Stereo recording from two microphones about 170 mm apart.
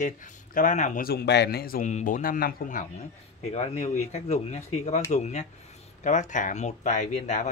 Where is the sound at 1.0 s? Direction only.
75° left (ahead or behind).